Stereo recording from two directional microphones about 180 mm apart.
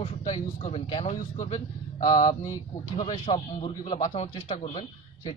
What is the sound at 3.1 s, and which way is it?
Speech, 25° left (ahead or behind).